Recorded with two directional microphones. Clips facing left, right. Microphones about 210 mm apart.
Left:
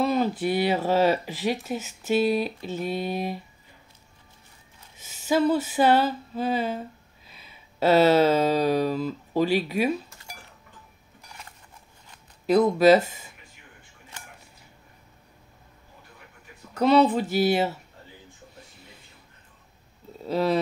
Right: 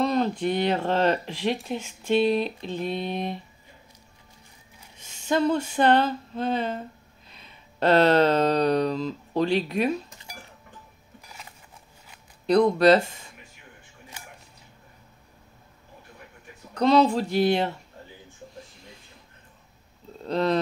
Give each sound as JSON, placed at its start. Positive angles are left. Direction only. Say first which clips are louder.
{"t": 0.0, "sound": "speech", "louder": "even", "side_deg": 5}
{"t": 4.9, "sound": "a sound", "louder": "left 1 dB", "side_deg": 5}
{"t": 7.2, "sound": "speech", "louder": "even", "side_deg": 5}
{"t": 12.4, "sound": "speech", "louder": "even", "side_deg": 5}
{"t": 16.7, "sound": "speech", "louder": "even", "side_deg": 5}
{"t": 20.1, "sound": "a sound", "louder": "even", "side_deg": 5}